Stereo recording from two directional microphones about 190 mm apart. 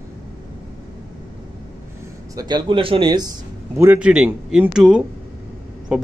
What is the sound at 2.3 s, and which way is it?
Speech, 20° right (ahead or behind).